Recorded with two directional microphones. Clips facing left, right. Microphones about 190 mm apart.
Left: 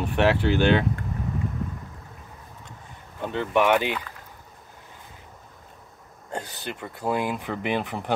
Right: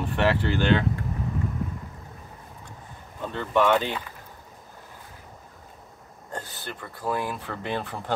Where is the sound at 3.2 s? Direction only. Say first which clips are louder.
Left 1 dB; 15° left (ahead or behind).